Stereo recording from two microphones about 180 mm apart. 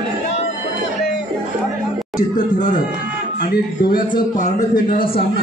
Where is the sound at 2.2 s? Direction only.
45° left (ahead or behind).